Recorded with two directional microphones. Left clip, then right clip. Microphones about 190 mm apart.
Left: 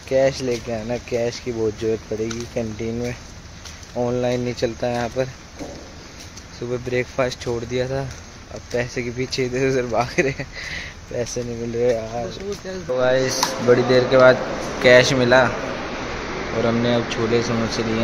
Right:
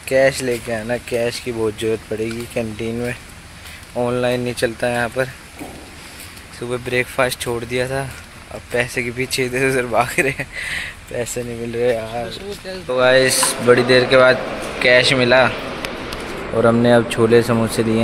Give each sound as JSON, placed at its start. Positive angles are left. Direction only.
{"t": 0.1, "sound": "speech", "side_deg": -15}
{"t": 4.2, "sound": "speech", "side_deg": -5}
{"t": 6.7, "sound": "speech", "side_deg": -5}
{"t": 16.6, "sound": "speech", "side_deg": -40}